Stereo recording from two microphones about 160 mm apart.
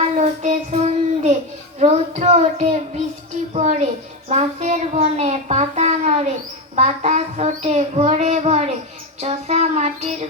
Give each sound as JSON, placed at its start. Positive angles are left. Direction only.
{"t": 0.0, "sound": "child singing", "side_deg": -45}
{"t": 1.8, "sound": "a child's voice", "side_deg": -45}